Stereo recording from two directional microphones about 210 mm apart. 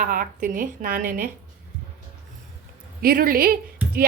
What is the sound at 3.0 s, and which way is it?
Speech, 45° right (ahead or behind).